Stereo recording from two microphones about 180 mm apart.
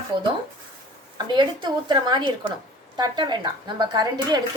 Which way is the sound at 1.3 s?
25° right (ahead or behind).